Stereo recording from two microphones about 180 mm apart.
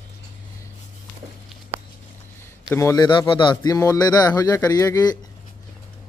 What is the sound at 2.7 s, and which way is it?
A man's voice, 15° left (ahead or behind).